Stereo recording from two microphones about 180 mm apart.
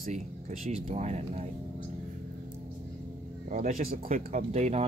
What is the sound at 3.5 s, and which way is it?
Speech, 50° right (ahead or behind).